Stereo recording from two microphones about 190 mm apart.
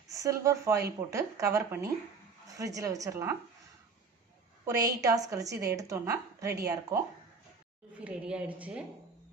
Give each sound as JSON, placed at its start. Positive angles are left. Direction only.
{"t": 0.1, "sound": "a woman's voice", "side_deg": -15}
{"t": 4.6, "sound": "a woman's voice", "side_deg": -20}
{"t": 7.9, "sound": "a woman's voice", "side_deg": -5}